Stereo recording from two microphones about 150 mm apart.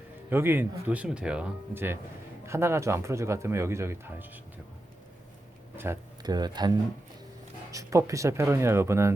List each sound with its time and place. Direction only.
0.3 s speech: 15° right (ahead or behind)
5.7 s speech: 15° right (ahead or behind)
6.2 s speech: 30° right (ahead or behind)